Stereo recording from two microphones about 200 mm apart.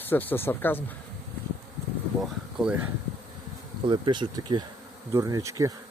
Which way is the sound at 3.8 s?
25° right (ahead or behind).